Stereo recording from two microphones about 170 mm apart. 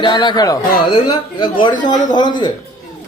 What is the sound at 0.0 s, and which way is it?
A man's voice, 25° left (ahead or behind).